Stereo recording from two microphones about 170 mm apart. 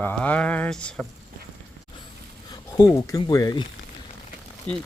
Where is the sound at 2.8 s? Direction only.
20° left (ahead or behind).